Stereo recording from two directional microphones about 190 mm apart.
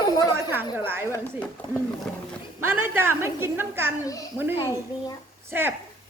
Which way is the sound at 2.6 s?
10° right (ahead or behind).